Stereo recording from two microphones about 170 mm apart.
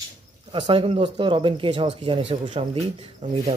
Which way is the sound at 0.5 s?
30° right (ahead or behind).